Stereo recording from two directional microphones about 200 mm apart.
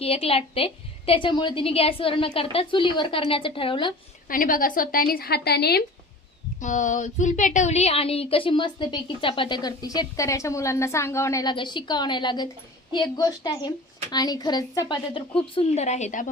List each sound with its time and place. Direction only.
0.0 s speech: 30° left (ahead or behind)
4.3 s a woman's voice: 45° left (ahead or behind)
6.6 s speech: 40° left (ahead or behind)